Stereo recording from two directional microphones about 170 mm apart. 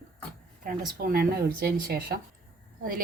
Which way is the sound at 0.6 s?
55° right (ahead or behind).